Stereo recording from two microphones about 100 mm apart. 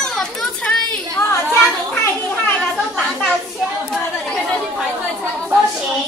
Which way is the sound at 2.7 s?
5° right (ahead or behind).